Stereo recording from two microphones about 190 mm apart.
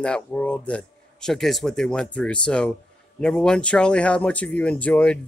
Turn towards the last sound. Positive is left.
turn(degrees=5)  # may be behind; listen again after turning